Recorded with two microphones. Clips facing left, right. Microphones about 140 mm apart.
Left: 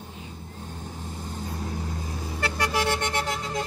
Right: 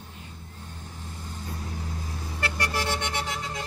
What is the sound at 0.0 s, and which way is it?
Vehicle, 35° left (ahead or behind).